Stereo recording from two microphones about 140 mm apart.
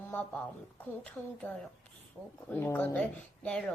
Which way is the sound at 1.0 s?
10° left (ahead or behind).